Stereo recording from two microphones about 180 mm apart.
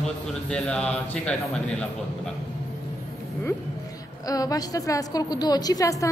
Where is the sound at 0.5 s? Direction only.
5° left (ahead or behind).